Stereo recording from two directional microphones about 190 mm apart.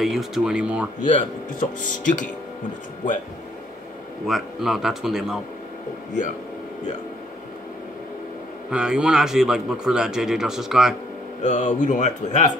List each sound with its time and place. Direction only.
0.0 s speech: centre (ahead or behind)
1.0 s speech: 40° left (ahead or behind)
4.3 s speech: centre (ahead or behind)
8.6 s speech: 5° right (ahead or behind)
11.4 s speech: 40° left (ahead or behind)